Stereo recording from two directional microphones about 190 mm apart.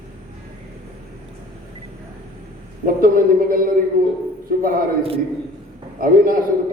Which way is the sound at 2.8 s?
50° right (ahead or behind).